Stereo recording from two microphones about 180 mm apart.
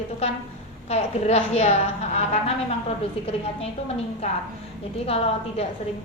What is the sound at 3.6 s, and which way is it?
A woman's voice, 35° left (ahead or behind).